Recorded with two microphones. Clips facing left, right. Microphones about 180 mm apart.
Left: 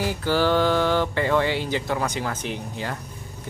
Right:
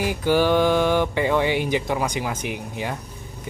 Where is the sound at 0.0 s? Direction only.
15° right (ahead or behind).